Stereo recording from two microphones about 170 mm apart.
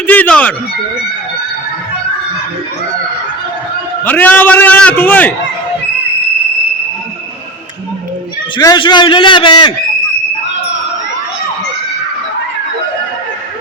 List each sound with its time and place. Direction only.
0.1 s speech: 10° left (ahead or behind)
4.0 s a man's voice: 10° left (ahead or behind)
8.5 s a man's voice: 25° left (ahead or behind)